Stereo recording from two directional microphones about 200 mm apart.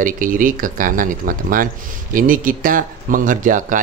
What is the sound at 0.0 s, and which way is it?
Speech, 45° right (ahead or behind).